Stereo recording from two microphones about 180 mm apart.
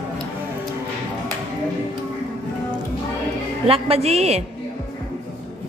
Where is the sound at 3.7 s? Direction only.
35° right (ahead or behind).